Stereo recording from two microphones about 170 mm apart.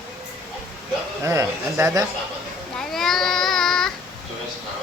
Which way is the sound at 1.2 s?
15° right (ahead or behind).